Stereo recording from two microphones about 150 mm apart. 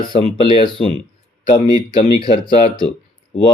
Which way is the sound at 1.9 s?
35° left (ahead or behind).